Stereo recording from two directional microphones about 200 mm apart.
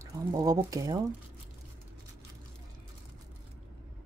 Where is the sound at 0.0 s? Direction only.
15° right (ahead or behind).